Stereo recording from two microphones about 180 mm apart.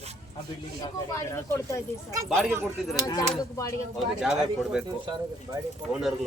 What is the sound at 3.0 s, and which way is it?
Speech, 20° left (ahead or behind).